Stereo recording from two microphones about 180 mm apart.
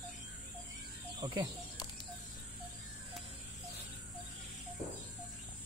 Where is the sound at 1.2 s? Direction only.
25° right (ahead or behind).